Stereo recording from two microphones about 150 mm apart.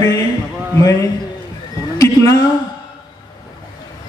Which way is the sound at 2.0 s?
20° left (ahead or behind).